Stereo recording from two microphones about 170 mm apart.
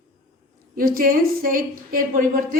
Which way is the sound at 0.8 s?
60° right (ahead or behind).